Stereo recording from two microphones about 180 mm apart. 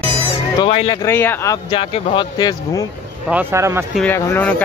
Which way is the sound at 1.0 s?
15° left (ahead or behind).